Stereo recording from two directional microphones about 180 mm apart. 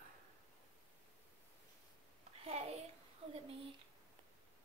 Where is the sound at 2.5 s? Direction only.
35° right (ahead or behind).